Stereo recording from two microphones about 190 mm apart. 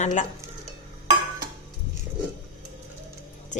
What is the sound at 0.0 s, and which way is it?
Speech, 40° left (ahead or behind).